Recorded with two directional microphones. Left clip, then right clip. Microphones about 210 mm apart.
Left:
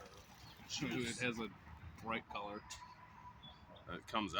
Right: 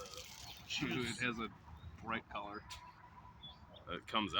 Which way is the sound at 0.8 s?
15° left (ahead or behind).